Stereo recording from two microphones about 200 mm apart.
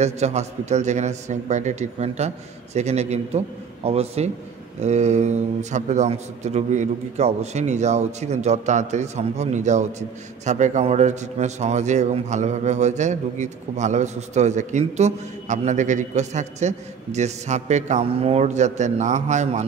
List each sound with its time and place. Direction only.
0.0 s a man's voice: 35° right (ahead or behind)